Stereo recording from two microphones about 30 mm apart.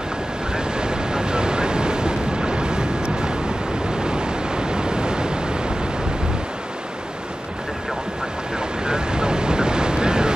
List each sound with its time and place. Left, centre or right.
0.7 s waves: right
8.8 s boat: right